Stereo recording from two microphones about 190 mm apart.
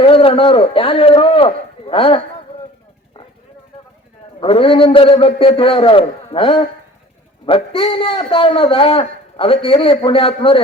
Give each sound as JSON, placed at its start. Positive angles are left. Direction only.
{"t": 0.0, "sound": "a man's voice", "side_deg": 30}
{"t": 4.4, "sound": "a man's voice", "side_deg": 30}